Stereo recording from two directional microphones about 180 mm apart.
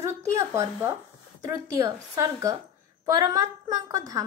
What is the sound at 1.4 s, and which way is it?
A woman's voice, 20° right (ahead or behind).